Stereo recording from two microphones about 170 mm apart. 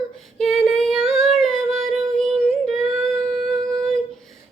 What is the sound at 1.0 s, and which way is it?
Female singing, centre (ahead or behind).